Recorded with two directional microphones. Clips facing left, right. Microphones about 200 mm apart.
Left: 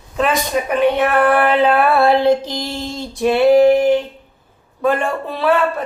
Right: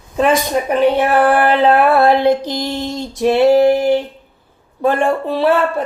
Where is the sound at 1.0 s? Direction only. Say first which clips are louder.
Right 1 dB; 30° right (ahead or behind).